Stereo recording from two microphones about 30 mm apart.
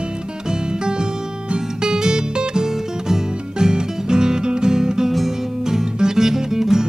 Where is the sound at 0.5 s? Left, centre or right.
Right.